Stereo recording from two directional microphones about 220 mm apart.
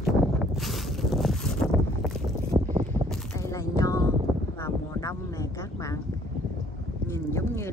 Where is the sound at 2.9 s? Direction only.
10° left (ahead or behind).